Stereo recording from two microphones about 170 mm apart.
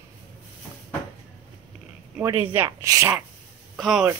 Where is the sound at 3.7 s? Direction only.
Centre (ahead or behind).